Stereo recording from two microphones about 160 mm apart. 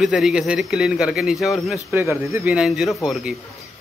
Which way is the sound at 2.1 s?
15° right (ahead or behind).